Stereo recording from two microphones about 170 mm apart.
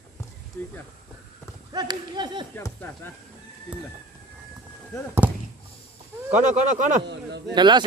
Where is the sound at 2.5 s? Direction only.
10° left (ahead or behind).